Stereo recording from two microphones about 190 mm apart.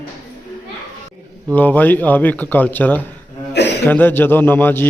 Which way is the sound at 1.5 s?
10° left (ahead or behind).